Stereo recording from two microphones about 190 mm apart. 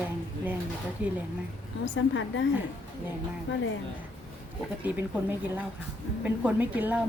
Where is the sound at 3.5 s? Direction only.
75° left (ahead or behind).